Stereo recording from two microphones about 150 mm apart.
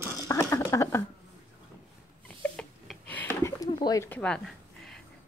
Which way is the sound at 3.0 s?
10° left (ahead or behind).